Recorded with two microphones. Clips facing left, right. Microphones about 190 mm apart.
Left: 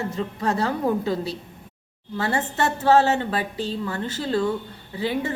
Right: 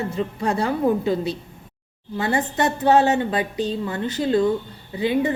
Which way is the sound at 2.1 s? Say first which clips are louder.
Right 2 dB; 15° right (ahead or behind).